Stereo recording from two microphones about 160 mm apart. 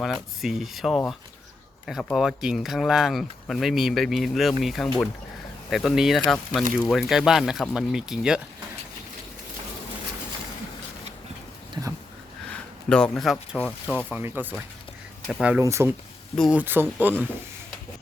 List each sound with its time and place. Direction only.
0.0 s speech: centre (ahead or behind)
11.7 s a sound: 20° right (ahead or behind)
12.9 s speech: 5° left (ahead or behind)
14.1 s speech: 15° right (ahead or behind)